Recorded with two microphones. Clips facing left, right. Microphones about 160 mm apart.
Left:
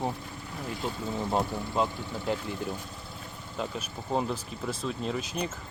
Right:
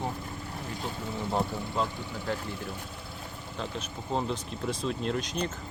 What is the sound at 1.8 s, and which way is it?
Speech, 20° left (ahead or behind).